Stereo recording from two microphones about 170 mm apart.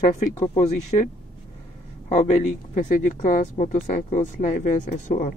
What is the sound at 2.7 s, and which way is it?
Speech, 45° left (ahead or behind).